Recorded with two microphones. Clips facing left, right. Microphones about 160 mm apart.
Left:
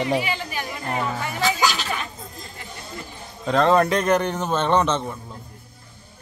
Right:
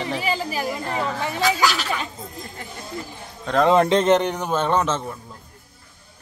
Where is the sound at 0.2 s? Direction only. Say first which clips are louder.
Right 3 dB; 35° right (ahead or behind).